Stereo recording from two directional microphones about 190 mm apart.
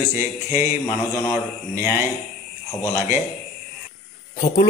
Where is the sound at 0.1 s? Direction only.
15° right (ahead or behind).